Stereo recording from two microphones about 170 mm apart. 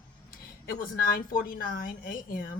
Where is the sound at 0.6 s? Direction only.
60° left (ahead or behind).